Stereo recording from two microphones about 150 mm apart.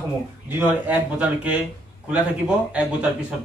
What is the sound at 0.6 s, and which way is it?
Speech, 10° right (ahead or behind).